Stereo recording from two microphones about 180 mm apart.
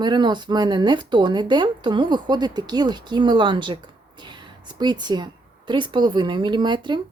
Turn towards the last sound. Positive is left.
turn(degrees=-25)  # may be behind; listen again after turning